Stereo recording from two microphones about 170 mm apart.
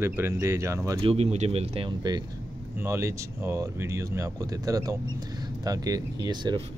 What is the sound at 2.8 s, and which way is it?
Speech, 15° right (ahead or behind).